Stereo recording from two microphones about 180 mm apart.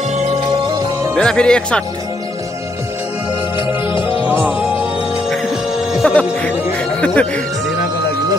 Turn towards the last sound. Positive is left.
turn(degrees=5)  # may be behind; listen again after turning